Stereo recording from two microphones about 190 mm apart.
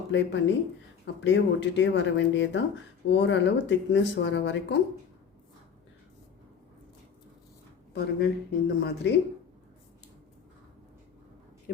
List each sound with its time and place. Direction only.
0.1 s speech: 70° left (ahead or behind)
7.9 s speech: 55° left (ahead or behind)